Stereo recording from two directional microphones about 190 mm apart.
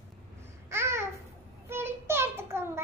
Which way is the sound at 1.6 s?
10° right (ahead or behind).